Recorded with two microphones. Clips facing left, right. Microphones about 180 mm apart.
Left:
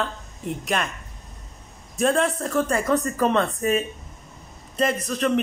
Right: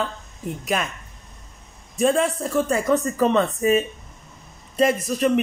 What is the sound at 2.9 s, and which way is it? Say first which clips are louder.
Speech: right 2 dB; 25° right (ahead or behind).